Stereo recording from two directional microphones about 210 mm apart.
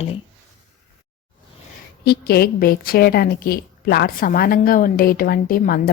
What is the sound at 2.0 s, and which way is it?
A woman's voice, 50° left (ahead or behind).